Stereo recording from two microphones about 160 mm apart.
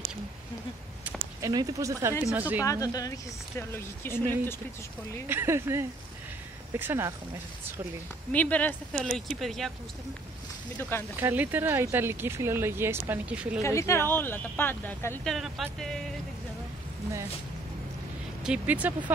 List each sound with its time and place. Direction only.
1.0 s a sound: 10° right (ahead or behind)
1.5 s speech: 25° right (ahead or behind)
2.6 s a woman's voice: 20° left (ahead or behind)
5.3 s speech: 15° right (ahead or behind)
8.3 s speech: 10° left (ahead or behind)
10.8 s speech: 15° left (ahead or behind)
11.1 s speech: 10° right (ahead or behind)
13.6 s speech: 20° left (ahead or behind)
15.2 s speech: centre (ahead or behind)
18.4 s speech: 10° right (ahead or behind)